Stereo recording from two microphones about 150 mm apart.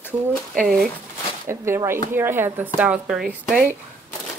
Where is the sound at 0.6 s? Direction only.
Centre (ahead or behind).